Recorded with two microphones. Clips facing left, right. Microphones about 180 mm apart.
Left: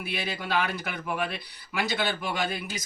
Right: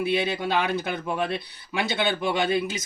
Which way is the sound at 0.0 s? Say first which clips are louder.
Right 9 dB; 25° right (ahead or behind).